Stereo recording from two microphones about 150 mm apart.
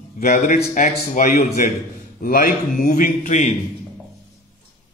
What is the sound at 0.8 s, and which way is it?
A man's voice, 60° left (ahead or behind).